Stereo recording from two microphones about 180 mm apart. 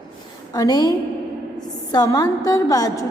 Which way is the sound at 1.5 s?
20° left (ahead or behind).